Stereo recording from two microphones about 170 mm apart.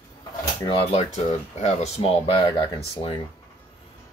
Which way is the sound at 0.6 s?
35° left (ahead or behind).